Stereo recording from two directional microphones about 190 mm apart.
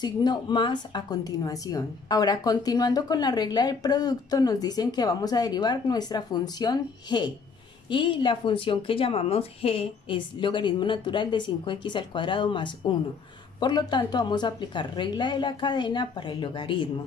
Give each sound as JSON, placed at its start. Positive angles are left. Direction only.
{"t": 0.0, "sound": "speech", "side_deg": 20}